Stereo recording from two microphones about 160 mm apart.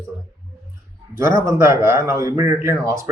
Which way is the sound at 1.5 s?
20° right (ahead or behind).